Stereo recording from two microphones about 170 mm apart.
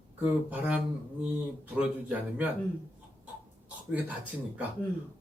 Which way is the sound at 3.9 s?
10° right (ahead or behind).